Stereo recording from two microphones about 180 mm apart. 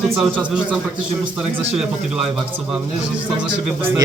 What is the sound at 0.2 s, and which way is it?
Speech, 5° right (ahead or behind).